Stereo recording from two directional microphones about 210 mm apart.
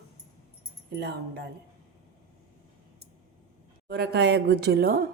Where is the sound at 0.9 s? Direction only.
50° right (ahead or behind).